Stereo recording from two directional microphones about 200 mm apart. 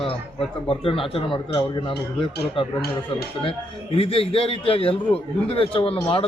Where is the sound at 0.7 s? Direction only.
25° left (ahead or behind).